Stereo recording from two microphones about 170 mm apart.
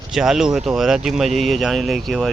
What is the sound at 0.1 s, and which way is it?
Speech, centre (ahead or behind).